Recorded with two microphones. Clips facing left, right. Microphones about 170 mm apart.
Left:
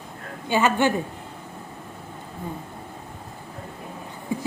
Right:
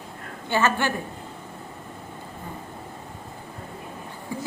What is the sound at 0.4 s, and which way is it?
Speech, 15° left (ahead or behind).